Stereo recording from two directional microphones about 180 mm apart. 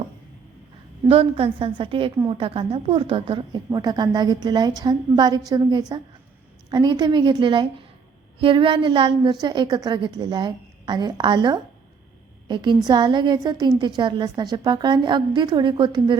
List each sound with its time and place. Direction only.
1.0 s a woman's voice: 30° right (ahead or behind)